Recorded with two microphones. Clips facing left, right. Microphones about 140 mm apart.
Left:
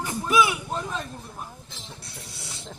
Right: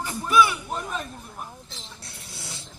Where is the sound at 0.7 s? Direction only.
10° right (ahead or behind).